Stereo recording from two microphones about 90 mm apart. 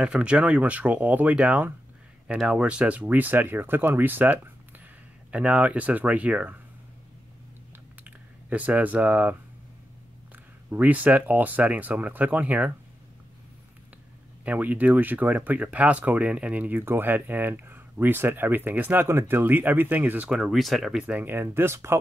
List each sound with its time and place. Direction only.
0.0 s speech: 10° right (ahead or behind)
8.0 s speech: 15° right (ahead or behind)
14.4 s speech: 15° right (ahead or behind)
21.0 s speech: 20° right (ahead or behind)